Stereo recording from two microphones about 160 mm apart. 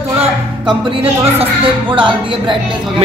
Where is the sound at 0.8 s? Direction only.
35° right (ahead or behind).